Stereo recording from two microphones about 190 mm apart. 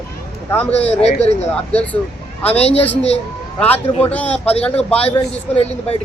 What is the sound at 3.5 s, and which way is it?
Speech, 10° left (ahead or behind).